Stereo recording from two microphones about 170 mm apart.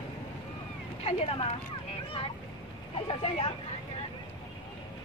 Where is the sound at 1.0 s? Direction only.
35° left (ahead or behind).